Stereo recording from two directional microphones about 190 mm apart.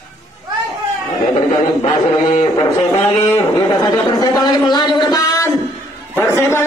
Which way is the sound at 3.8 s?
20° left (ahead or behind).